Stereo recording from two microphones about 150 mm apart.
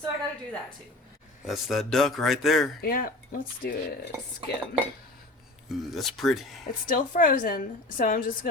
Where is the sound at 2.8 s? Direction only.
75° left (ahead or behind).